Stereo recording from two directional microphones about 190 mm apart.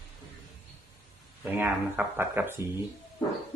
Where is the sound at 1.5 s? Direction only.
10° right (ahead or behind).